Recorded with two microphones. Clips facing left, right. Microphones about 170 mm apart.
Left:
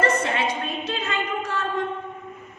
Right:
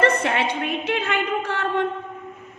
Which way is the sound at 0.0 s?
65° right (ahead or behind).